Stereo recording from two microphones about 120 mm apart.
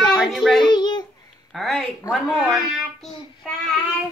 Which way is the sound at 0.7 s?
35° left (ahead or behind).